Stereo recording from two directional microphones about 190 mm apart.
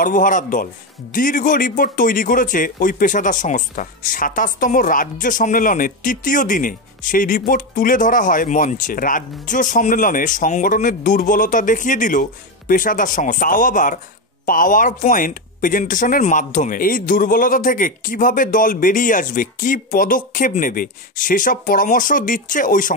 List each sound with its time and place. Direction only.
0.0 s speech: 45° left (ahead or behind)